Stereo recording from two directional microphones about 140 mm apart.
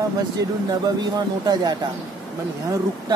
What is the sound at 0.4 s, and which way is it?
Speech, 25° right (ahead or behind).